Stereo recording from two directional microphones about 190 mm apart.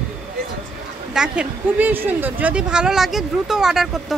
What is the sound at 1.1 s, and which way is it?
Speech, 5° right (ahead or behind).